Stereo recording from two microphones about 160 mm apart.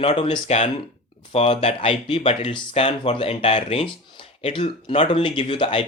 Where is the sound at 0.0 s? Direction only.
35° left (ahead or behind).